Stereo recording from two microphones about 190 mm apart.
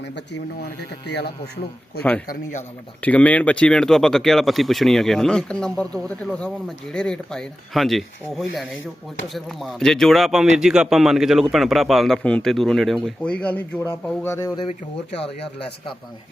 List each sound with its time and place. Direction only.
0.6 s speech: 60° left (ahead or behind)
2.2 s a man's voice: 50° left (ahead or behind)
3.0 s a man's voice: 10° left (ahead or behind)